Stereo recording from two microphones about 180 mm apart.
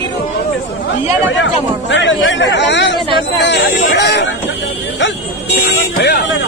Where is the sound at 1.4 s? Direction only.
90° left; by 4.4 s 70° left (ahead or behind).